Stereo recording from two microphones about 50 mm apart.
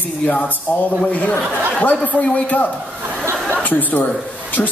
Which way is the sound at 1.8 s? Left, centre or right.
Left.